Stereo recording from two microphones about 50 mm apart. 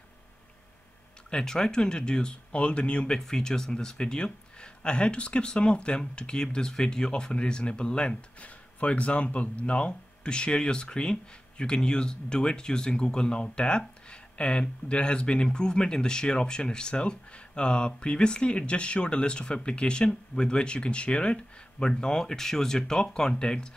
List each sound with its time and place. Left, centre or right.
1.3 s speech: centre